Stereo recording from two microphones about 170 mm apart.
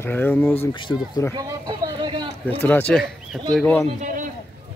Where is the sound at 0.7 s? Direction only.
30° left (ahead or behind).